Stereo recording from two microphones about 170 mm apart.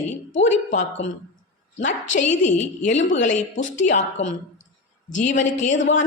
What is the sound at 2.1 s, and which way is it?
A woman's voice, 45° left (ahead or behind).